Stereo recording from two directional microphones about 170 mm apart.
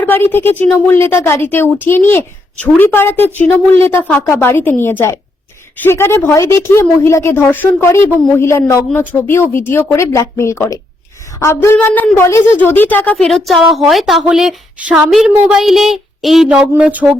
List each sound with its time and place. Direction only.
0.0 s speech: 10° left (ahead or behind); by 17.2 s 10° right (ahead or behind)